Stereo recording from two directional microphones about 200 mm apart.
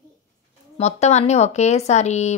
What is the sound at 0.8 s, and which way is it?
Speech, 35° left (ahead or behind).